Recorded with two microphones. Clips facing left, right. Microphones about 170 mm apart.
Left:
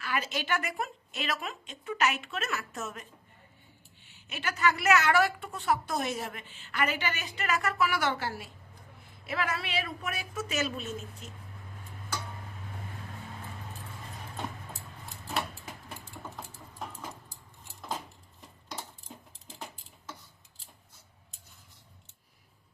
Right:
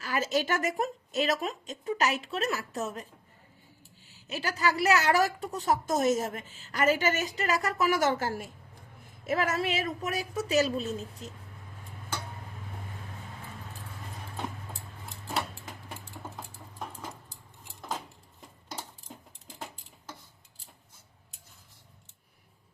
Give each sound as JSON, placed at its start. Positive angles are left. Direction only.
{"t": 0.0, "sound": "a woman's voice", "side_deg": -40}